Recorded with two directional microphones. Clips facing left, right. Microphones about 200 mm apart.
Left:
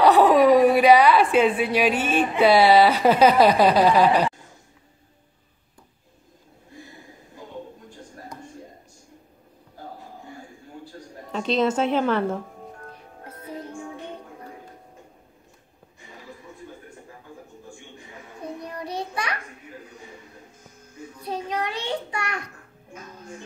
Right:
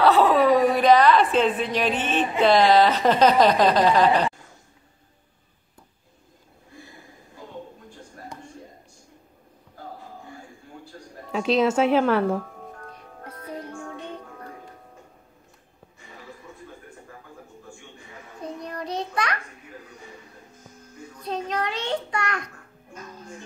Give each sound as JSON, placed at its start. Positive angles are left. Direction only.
{"t": 0.0, "sound": "speech", "side_deg": 15}
{"t": 11.3, "sound": "a woman's voice", "side_deg": -5}
{"t": 18.6, "sound": "child singing", "side_deg": 10}
{"t": 21.2, "sound": "a sound", "side_deg": 10}